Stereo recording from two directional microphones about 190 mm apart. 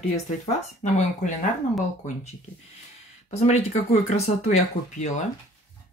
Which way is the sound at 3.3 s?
35° left (ahead or behind).